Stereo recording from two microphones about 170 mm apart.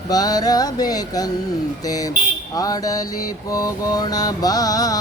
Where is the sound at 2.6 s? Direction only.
20° left (ahead or behind).